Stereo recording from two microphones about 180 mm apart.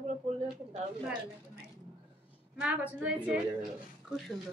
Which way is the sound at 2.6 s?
10° right (ahead or behind).